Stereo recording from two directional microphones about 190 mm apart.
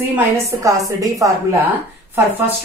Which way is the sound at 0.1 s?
15° right (ahead or behind).